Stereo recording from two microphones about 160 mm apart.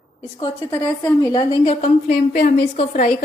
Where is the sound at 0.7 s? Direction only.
15° left (ahead or behind).